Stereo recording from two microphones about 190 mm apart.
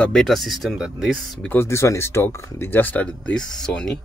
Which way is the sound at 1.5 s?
15° left (ahead or behind).